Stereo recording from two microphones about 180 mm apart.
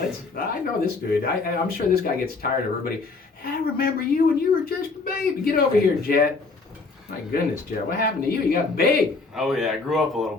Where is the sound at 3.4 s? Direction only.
55° left (ahead or behind).